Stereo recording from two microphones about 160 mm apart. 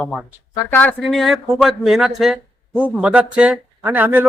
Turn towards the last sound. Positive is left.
turn(degrees=-10)  # may be behind; listen again after turning